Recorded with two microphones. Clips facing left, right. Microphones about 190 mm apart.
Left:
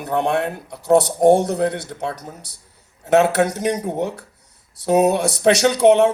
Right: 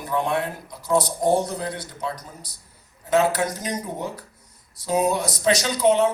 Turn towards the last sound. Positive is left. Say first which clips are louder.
# left 6 dB
turn(degrees=70)  # may be behind; listen again after turning